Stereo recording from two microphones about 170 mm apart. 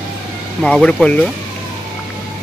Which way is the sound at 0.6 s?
5° left (ahead or behind).